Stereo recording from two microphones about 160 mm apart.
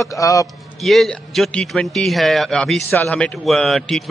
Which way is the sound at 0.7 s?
Centre (ahead or behind).